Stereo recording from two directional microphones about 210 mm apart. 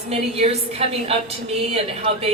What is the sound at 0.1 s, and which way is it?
A woman's voice, 30° right (ahead or behind).